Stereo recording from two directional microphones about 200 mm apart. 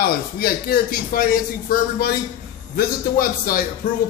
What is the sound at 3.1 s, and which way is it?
Speech, 45° left (ahead or behind).